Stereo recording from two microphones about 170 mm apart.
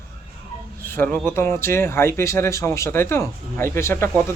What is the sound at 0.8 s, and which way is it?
Speech, 10° left (ahead or behind).